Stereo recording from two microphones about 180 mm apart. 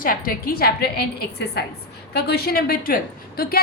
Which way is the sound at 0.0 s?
55° left (ahead or behind).